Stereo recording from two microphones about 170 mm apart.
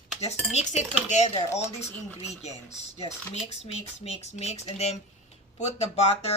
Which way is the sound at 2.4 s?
40° left (ahead or behind).